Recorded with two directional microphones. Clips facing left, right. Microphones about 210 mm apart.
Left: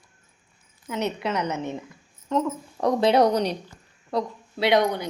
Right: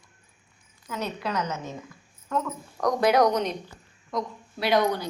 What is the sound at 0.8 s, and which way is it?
A woman's voice, 25° left (ahead or behind).